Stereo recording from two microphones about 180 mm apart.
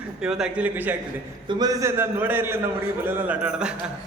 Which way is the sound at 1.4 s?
20° right (ahead or behind).